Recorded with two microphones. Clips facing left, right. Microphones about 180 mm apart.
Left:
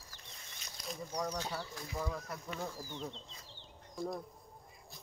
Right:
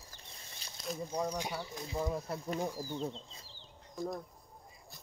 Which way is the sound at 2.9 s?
35° right (ahead or behind).